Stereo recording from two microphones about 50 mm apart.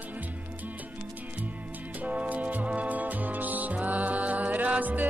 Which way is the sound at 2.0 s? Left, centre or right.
Right.